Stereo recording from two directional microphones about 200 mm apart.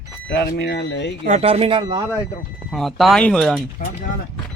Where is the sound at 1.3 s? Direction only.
30° right (ahead or behind).